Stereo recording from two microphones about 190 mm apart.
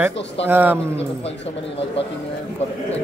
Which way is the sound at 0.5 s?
10° right (ahead or behind).